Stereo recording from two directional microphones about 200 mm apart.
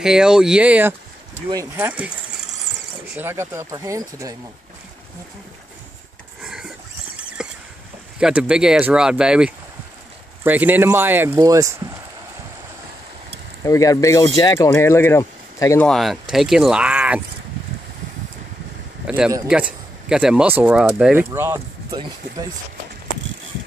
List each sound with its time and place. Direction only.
0.0 s speech: 5° right (ahead or behind)
3.2 s speech: 10° right (ahead or behind)
6.4 s a sound: 5° right (ahead or behind)
8.2 s speech: 5° right (ahead or behind)
13.7 s speech: 15° left (ahead or behind)
15.9 s speech: centre (ahead or behind)
19.0 s speech: 5° right (ahead or behind)